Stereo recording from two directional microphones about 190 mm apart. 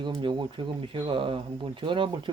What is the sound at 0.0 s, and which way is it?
Speech, 25° right (ahead or behind).